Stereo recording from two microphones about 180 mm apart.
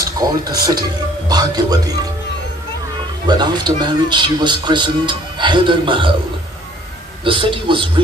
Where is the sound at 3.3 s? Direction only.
25° right (ahead or behind).